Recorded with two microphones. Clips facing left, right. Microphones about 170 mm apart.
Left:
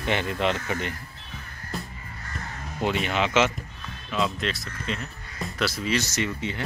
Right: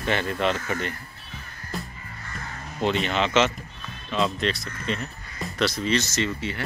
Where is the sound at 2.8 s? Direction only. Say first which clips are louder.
Right 1 dB; 10° left (ahead or behind).